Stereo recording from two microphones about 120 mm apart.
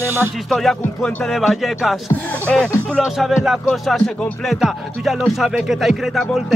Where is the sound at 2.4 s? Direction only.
10° left (ahead or behind).